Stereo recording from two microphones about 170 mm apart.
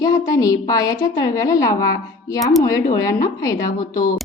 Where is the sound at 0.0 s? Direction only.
20° left (ahead or behind).